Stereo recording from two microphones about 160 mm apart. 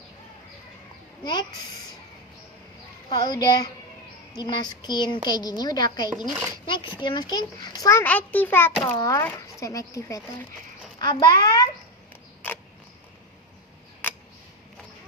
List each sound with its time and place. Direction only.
1.2 s a child's voice: 25° left (ahead or behind)
3.1 s a child's voice: 25° left (ahead or behind); by 8.7 s 10° left (ahead or behind)
8.8 s a child's voice: 25° left (ahead or behind)
14.0 s a sound: 10° left (ahead or behind)